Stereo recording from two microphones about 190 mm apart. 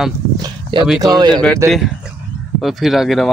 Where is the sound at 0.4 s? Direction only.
25° right (ahead or behind).